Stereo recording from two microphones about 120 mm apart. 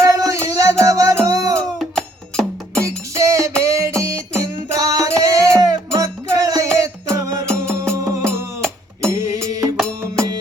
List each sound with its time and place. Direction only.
0.0 s music: 25° right (ahead or behind)
1.8 s music: 5° left (ahead or behind)
2.8 s music: 25° right (ahead or behind)
7.4 s music: 5° left (ahead or behind)
7.9 s music: 25° right (ahead or behind)
9.3 s music: 30° right (ahead or behind)
9.7 s music: 5° left (ahead or behind)